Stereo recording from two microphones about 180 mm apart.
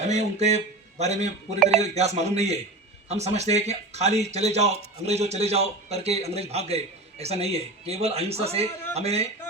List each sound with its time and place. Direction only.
0.1 s a man's voice: 40° right (ahead or behind)